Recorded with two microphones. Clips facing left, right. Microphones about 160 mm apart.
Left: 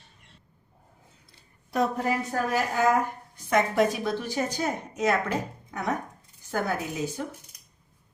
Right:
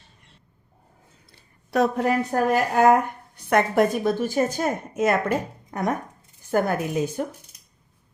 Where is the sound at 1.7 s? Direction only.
75° right (ahead or behind); by 5.2 s 55° right (ahead or behind).